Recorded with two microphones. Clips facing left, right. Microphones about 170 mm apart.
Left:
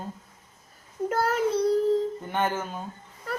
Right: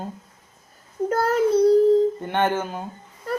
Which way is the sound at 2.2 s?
75° right (ahead or behind).